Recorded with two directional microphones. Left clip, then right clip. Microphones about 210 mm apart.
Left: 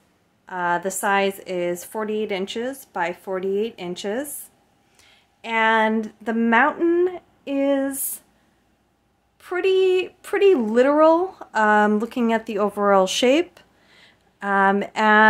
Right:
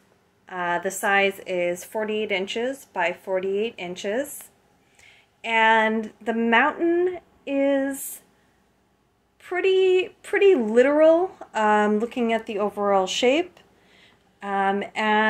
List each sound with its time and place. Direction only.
0.9 s speech: 25° left (ahead or behind)
5.5 s speech: 15° left (ahead or behind)
9.4 s speech: 25° left (ahead or behind)
14.4 s speech: 25° left (ahead or behind)